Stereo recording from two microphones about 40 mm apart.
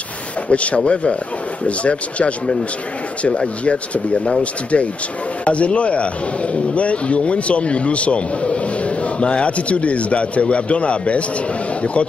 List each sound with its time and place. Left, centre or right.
0.5 s a man's voice: left